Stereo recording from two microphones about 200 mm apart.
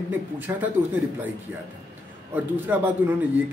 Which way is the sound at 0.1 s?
10° right (ahead or behind).